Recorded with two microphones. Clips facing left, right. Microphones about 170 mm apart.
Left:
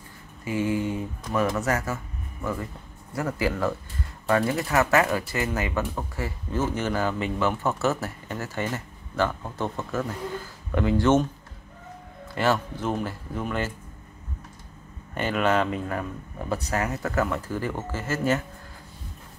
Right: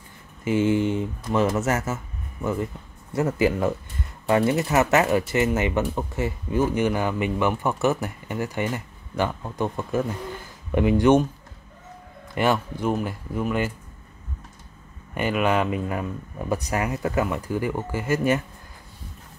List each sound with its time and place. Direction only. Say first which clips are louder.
0.5 s speech: right 5 dB; 25° right (ahead or behind)
3.2 s speech: right 5 dB; 20° right (ahead or behind)
12.4 s speech: right 2 dB; 15° right (ahead or behind)
15.1 s speech: right 1 dB; 10° right (ahead or behind)